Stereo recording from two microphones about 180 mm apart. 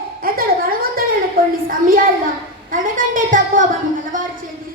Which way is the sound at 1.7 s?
50° right (ahead or behind).